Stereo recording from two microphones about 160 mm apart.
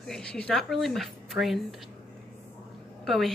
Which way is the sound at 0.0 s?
5° left (ahead or behind).